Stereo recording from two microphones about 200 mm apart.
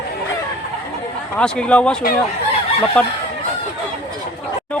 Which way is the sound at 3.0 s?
5° left (ahead or behind).